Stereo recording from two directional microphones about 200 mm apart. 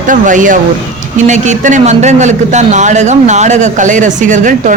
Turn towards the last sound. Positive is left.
turn(degrees=-40)  # may be behind; listen again after turning